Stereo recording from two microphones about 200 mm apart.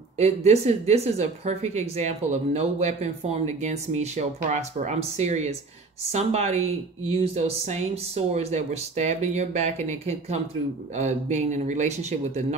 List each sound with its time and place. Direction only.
0.2 s speech: 35° right (ahead or behind)